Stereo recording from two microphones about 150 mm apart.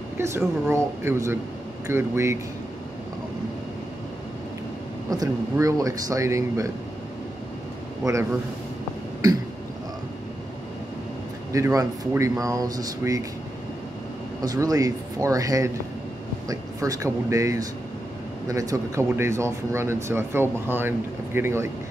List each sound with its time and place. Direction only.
0.2 s speech: 20° right (ahead or behind)
5.1 s speech: 25° right (ahead or behind)
8.0 s speech: 20° right (ahead or behind)
11.5 s speech: 20° right (ahead or behind)
14.4 s speech: 25° right (ahead or behind)